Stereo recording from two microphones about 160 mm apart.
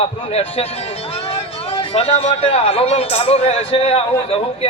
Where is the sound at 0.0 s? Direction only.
40° left (ahead or behind).